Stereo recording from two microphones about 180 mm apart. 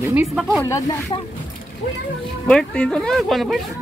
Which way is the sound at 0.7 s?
20° left (ahead or behind).